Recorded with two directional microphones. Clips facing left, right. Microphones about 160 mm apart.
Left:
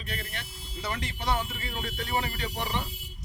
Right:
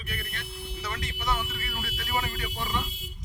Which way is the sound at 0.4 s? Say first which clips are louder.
Right 7 dB; 60° right (ahead or behind).